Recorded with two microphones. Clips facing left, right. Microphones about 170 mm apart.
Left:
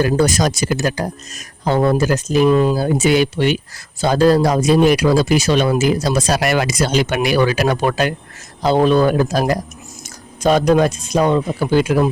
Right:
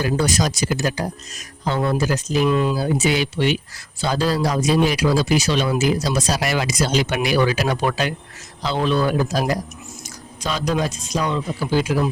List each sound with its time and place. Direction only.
0.0 s speech: 45° left (ahead or behind)